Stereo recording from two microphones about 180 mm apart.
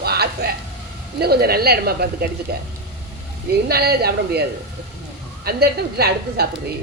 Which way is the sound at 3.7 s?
60° right (ahead or behind).